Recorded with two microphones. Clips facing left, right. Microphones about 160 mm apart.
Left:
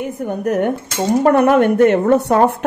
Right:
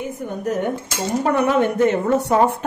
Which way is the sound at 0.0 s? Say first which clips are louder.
Left 5 dB; 60° left (ahead or behind).